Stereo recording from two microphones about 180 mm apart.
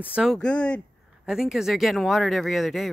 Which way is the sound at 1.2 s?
5° right (ahead or behind).